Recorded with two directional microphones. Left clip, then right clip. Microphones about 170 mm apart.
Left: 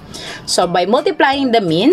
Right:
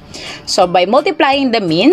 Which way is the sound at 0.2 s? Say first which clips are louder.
Right 3 dB; 25° right (ahead or behind).